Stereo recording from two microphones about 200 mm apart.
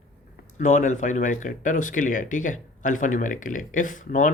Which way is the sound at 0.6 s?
40° left (ahead or behind).